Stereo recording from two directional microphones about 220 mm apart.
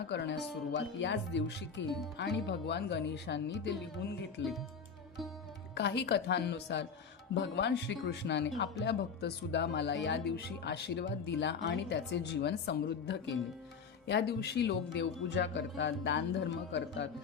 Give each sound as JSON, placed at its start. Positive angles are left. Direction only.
{"t": 0.1, "sound": "a man's voice", "side_deg": 50}
{"t": 5.7, "sound": "a man's voice", "side_deg": 50}